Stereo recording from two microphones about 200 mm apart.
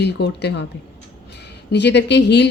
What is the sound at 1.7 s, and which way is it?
Speech, 60° left (ahead or behind).